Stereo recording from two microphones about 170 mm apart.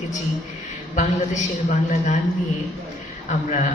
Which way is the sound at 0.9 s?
45° left (ahead or behind).